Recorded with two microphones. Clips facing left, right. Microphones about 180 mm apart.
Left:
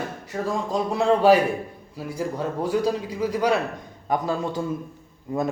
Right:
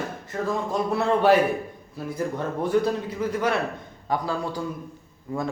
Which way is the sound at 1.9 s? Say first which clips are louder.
Even; 10° left (ahead or behind).